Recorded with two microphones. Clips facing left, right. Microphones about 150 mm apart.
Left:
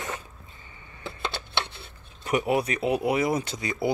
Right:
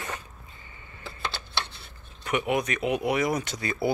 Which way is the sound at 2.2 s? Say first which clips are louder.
Left 2 dB; 35° left (ahead or behind).